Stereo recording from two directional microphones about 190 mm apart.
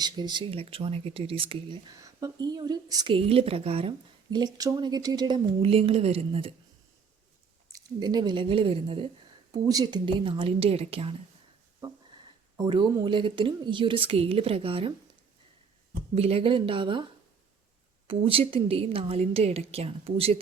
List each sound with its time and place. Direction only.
0.0 s speech: 25° right (ahead or behind)
1.9 s speech: 15° right (ahead or behind)
7.7 s speech: 20° right (ahead or behind)
12.5 s speech: 25° right (ahead or behind)
16.1 s speech: 30° right (ahead or behind)
18.1 s a woman's voice: 30° right (ahead or behind)